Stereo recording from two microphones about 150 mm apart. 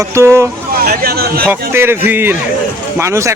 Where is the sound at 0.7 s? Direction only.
80° right.